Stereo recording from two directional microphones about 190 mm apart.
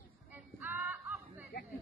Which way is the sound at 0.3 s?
10° right (ahead or behind).